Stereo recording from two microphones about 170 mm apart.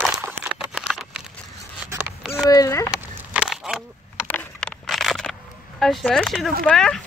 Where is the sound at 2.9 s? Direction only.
5° right (ahead or behind).